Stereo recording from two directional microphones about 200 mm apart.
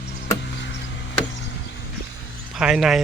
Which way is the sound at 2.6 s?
5° right (ahead or behind).